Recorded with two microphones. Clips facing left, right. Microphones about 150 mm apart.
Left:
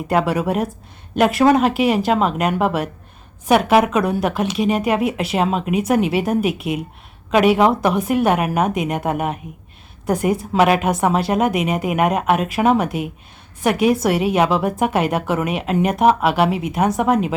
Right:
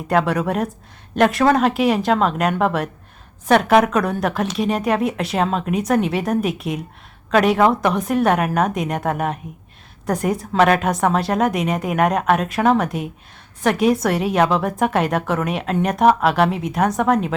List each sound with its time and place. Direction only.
0.1 s speech: 5° left (ahead or behind)